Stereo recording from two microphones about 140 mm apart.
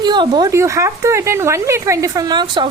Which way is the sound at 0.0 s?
30° right (ahead or behind).